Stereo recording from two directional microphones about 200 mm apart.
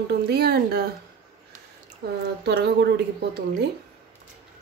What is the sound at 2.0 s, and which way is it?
Speech, 50° right (ahead or behind).